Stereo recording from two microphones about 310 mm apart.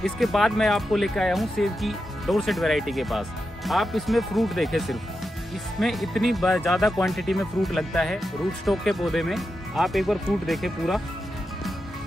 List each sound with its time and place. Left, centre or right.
0.0 s speech: centre